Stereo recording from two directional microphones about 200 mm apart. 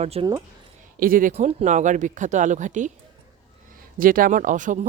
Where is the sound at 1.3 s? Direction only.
35° right (ahead or behind).